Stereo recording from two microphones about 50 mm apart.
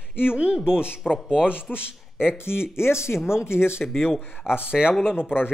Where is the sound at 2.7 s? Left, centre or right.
Left.